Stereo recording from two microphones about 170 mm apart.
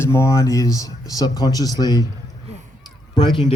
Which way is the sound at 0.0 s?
15° left (ahead or behind).